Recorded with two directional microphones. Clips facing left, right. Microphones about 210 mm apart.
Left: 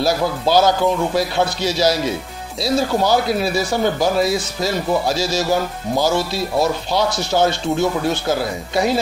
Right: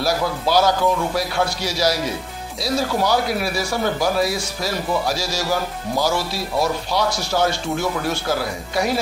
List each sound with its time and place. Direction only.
0.0 s speech: 25° left (ahead or behind)